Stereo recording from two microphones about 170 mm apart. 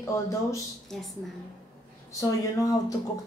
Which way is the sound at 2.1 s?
20° left (ahead or behind).